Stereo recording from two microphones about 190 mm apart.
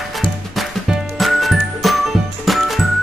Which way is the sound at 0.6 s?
Centre (ahead or behind).